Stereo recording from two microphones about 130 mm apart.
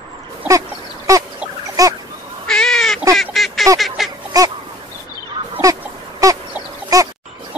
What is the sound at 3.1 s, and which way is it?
Duck, centre (ahead or behind).